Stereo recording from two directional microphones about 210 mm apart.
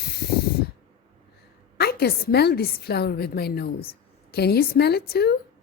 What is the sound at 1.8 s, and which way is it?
A woman's voice, 50° left (ahead or behind).